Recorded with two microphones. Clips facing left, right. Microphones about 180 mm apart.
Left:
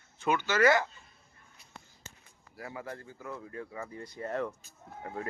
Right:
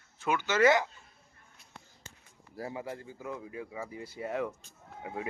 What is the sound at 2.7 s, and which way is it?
Speech, 15° right (ahead or behind).